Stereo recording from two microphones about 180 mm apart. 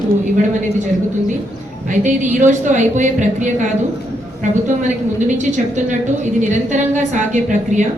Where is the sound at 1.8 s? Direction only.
45° right (ahead or behind).